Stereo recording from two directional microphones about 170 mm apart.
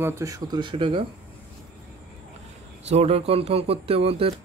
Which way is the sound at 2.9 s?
35° right (ahead or behind).